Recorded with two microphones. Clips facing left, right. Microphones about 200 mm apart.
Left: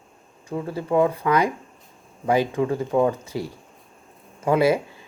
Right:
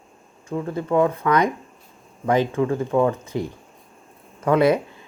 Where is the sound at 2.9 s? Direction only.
35° left (ahead or behind).